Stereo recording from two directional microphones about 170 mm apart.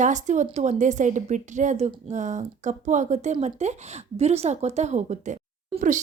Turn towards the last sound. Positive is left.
turn(degrees=-45)  # may be behind; listen again after turning